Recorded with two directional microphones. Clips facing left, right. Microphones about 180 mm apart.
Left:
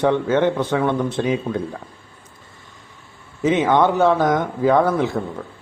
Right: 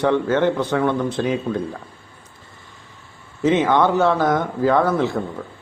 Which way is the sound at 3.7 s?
15° left (ahead or behind).